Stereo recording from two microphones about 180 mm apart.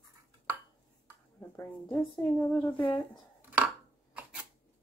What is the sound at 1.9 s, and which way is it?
A woman's voice, centre (ahead or behind).